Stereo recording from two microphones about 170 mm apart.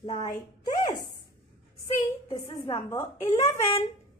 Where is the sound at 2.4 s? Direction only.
15° left (ahead or behind).